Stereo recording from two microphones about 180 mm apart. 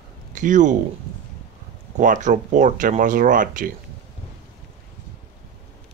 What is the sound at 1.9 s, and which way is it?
Speech, 45° right (ahead or behind).